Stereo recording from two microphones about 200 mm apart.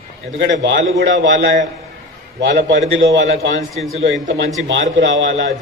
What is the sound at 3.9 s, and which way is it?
A man's voice, 70° right (ahead or behind).